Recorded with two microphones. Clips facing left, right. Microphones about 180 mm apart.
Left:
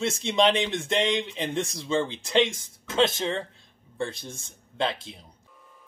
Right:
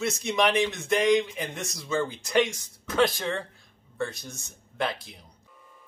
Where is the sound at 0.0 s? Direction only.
30° left (ahead or behind).